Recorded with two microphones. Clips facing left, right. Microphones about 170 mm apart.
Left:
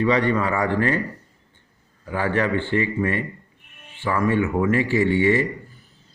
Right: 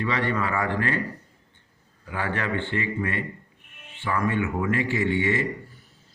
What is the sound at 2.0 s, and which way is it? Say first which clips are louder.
A man's voice: left 6 dB; 35° left (ahead or behind).